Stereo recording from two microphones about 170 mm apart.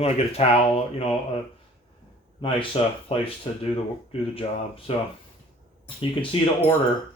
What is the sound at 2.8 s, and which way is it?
Speech, 35° left (ahead or behind).